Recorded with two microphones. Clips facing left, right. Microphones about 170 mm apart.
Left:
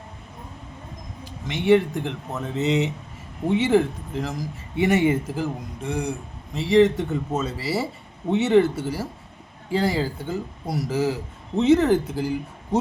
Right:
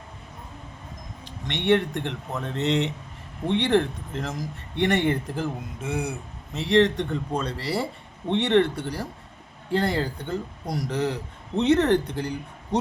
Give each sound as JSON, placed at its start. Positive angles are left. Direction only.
{"t": 1.2, "sound": "speech", "side_deg": 0}